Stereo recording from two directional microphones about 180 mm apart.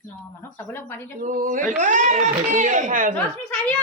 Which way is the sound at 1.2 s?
50° right (ahead or behind).